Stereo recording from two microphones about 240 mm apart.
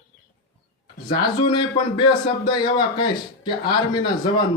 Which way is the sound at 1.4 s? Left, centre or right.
Centre.